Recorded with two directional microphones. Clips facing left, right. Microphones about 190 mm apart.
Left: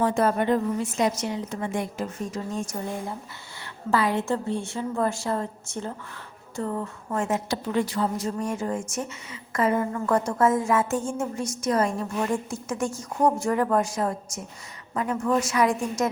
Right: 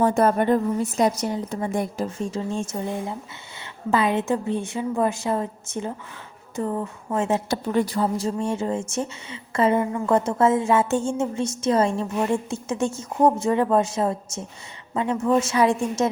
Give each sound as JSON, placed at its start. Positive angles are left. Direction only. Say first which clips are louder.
{"t": 0.0, "sound": "a woman's voice", "louder": "right 3 dB", "side_deg": -45}
{"t": 7.5, "sound": "speech", "louder": "right 3 dB", "side_deg": -45}